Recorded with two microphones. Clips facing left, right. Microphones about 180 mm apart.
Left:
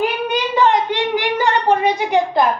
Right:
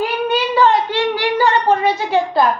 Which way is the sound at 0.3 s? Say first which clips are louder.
Right 3 dB; 20° left (ahead or behind).